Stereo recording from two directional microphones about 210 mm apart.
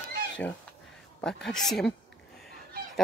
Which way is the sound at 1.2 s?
5° left (ahead or behind).